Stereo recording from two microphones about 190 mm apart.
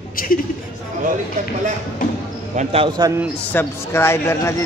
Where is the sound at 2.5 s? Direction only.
30° right (ahead or behind).